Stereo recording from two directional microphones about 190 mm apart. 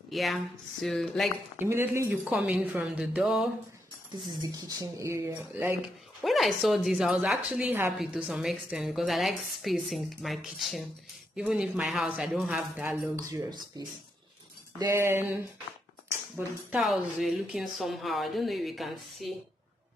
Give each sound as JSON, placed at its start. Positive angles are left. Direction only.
{"t": 0.1, "sound": "a woman's voice", "side_deg": 0}
{"t": 1.6, "sound": "a woman's voice", "side_deg": -15}
{"t": 4.4, "sound": "speech", "side_deg": -20}
{"t": 6.2, "sound": "a woman's voice", "side_deg": 0}